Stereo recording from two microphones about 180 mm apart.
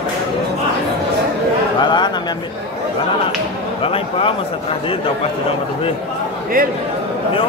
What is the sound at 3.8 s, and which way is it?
A man's voice, 30° left (ahead or behind).